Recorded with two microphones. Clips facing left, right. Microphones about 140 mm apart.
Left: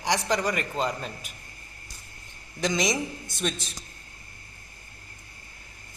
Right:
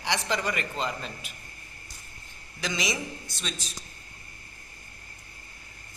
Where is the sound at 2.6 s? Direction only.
45° left (ahead or behind).